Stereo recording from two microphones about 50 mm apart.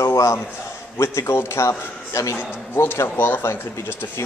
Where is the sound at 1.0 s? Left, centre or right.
Left.